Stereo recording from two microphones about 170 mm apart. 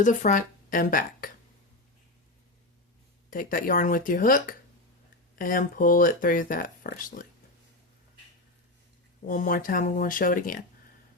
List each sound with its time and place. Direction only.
0.0 s a woman's voice: 50° left (ahead or behind)
3.2 s speech: 55° left (ahead or behind)
9.2 s speech: 50° left (ahead or behind)